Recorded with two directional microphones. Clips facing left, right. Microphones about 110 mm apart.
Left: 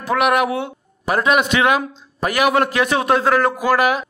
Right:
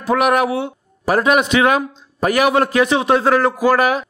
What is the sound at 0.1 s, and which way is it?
A man's voice, 35° right (ahead or behind).